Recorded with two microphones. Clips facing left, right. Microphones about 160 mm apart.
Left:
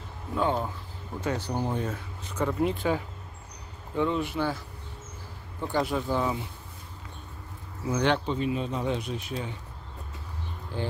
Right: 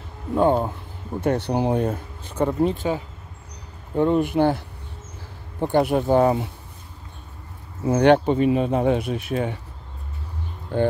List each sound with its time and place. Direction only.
0.4 s speech: 45° right (ahead or behind)
1.2 s speech: 60° right (ahead or behind)
1.9 s speech: 30° right (ahead or behind)
3.9 s speech: 50° right (ahead or behind)
7.8 s speech: 55° right (ahead or behind)
10.7 s speech: 55° right (ahead or behind)